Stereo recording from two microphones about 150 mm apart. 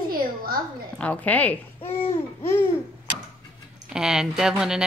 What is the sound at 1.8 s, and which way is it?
Babbling, 40° left (ahead or behind).